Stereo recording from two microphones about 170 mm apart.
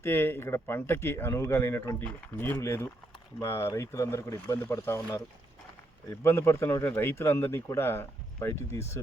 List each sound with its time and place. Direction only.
0.0 s speech: 15° left (ahead or behind)